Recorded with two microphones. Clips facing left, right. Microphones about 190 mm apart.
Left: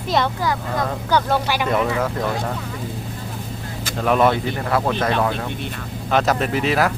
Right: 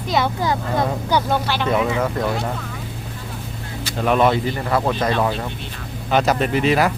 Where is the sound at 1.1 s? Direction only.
10° right (ahead or behind).